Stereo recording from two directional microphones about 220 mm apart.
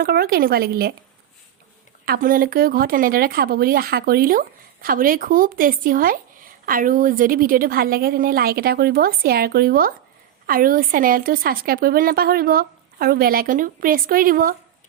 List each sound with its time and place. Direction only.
0.0 s speech: 45° right (ahead or behind)
2.0 s speech: 40° right (ahead or behind)